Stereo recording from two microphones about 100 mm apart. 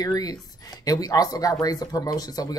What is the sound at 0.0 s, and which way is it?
Speech, 40° left (ahead or behind).